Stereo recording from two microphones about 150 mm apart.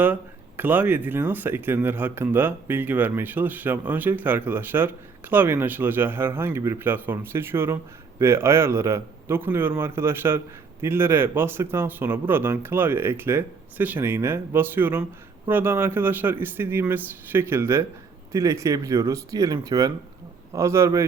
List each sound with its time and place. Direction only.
0.0 s speech: 10° right (ahead or behind)